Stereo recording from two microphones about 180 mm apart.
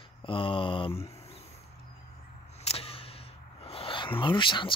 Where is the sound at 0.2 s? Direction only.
30° left (ahead or behind).